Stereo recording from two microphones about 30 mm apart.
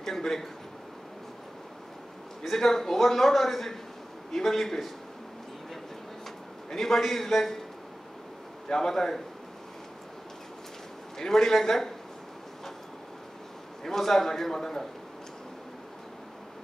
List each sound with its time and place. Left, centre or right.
0.0 s a man's voice: centre
2.5 s a man's voice: centre
6.7 s a man's voice: centre
8.6 s a man's voice: centre
11.1 s a man's voice: centre
13.8 s a man's voice: centre